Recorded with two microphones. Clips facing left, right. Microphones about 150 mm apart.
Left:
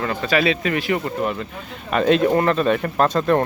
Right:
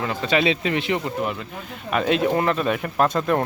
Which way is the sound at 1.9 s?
5° right (ahead or behind).